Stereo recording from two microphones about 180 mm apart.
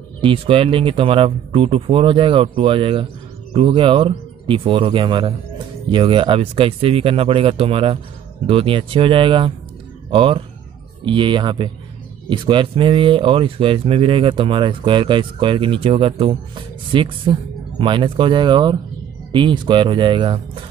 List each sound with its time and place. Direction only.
0.2 s speech: 30° right (ahead or behind)